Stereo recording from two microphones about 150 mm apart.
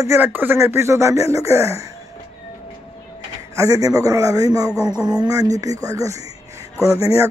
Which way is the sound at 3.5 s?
25° right (ahead or behind).